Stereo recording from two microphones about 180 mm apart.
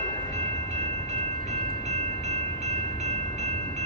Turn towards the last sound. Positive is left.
turn(degrees=-40)  # may be behind; listen again after turning